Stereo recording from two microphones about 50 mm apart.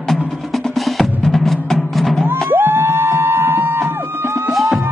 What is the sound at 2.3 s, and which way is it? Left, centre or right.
Music, right.